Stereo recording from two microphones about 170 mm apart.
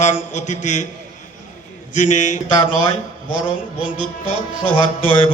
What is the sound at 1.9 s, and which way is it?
Speech, 45° left (ahead or behind).